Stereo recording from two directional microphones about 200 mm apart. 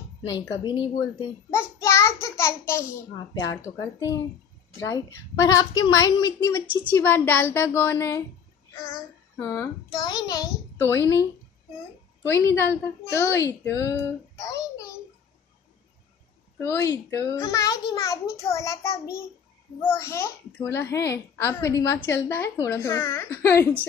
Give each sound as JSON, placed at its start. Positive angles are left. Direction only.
{"t": 0.2, "sound": "a woman's voice", "side_deg": 20}
{"t": 1.5, "sound": "child singing", "side_deg": 15}
{"t": 3.3, "sound": "a child's voice", "side_deg": 15}
{"t": 9.4, "sound": "a child's voice", "side_deg": 15}
{"t": 12.3, "sound": "a child's voice", "side_deg": 15}
{"t": 16.5, "sound": "a child's voice", "side_deg": 10}